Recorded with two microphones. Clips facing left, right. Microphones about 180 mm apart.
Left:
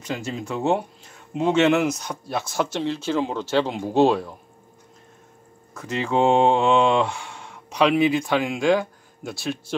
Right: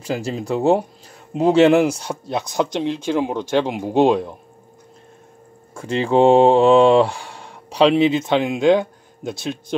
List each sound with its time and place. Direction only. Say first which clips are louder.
0.0 s speech: right 5 dB; 35° right (ahead or behind)
5.8 s speech: right 6 dB; 30° right (ahead or behind)